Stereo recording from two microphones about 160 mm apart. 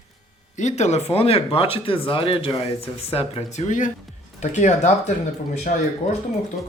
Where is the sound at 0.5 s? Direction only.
45° left (ahead or behind).